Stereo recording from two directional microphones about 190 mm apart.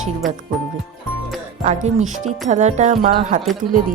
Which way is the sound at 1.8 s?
40° right (ahead or behind).